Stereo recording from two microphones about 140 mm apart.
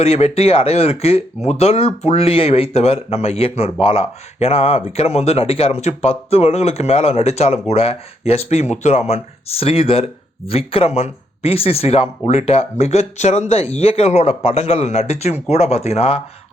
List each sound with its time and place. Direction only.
0.0 s speech: 45° left (ahead or behind)